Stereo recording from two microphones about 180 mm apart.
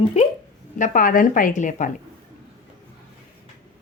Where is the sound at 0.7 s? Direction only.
45° left (ahead or behind).